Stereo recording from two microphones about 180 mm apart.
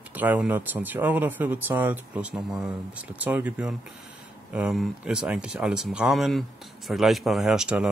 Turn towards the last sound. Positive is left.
turn(degrees=-5)  # may be behind; listen again after turning